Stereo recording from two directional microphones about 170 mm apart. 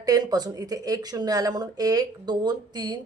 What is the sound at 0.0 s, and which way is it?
Speech, 20° right (ahead or behind).